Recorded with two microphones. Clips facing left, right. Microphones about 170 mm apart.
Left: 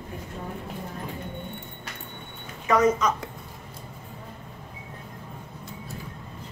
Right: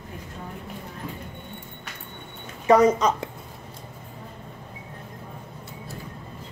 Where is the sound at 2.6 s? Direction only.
35° right (ahead or behind).